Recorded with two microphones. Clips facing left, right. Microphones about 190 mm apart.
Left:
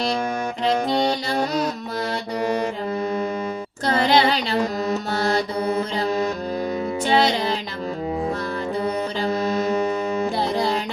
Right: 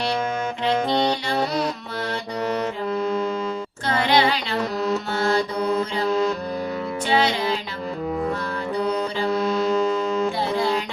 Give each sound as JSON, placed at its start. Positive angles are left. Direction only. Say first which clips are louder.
{"t": 2.5, "sound": "music", "louder": "right 1 dB", "side_deg": 15}
{"t": 3.8, "sound": "a sound", "louder": "left 2 dB", "side_deg": 40}
{"t": 5.1, "sound": "music", "louder": "even", "side_deg": 40}
{"t": 7.1, "sound": "music", "louder": "left 1 dB", "side_deg": 40}